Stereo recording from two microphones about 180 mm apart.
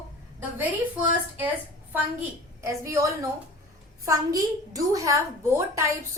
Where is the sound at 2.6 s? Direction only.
15° right (ahead or behind).